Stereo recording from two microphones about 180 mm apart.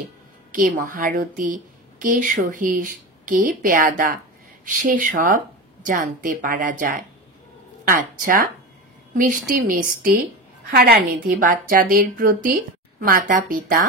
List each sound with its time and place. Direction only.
0.5 s a woman's voice: 50° right (ahead or behind)